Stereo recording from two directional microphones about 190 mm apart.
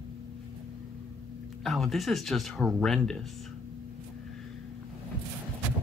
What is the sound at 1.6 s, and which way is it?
Speech, centre (ahead or behind).